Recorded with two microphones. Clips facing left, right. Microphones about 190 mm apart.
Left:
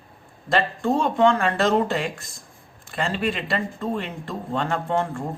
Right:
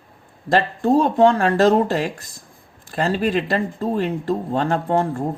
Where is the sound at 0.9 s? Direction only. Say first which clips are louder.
Right 4 dB; 35° right (ahead or behind).